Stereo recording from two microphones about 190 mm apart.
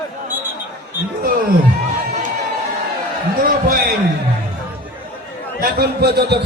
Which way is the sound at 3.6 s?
50° right (ahead or behind).